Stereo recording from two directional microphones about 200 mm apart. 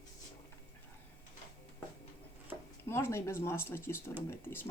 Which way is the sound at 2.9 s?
15° left (ahead or behind).